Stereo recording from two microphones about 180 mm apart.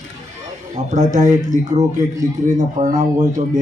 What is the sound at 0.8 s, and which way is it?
Speech, 40° right (ahead or behind).